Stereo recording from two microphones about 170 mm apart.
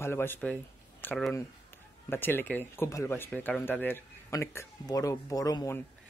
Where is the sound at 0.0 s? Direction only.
15° left (ahead or behind).